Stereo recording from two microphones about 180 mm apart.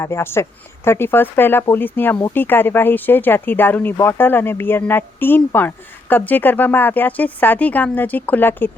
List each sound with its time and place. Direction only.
0.0 s speech: 15° left (ahead or behind)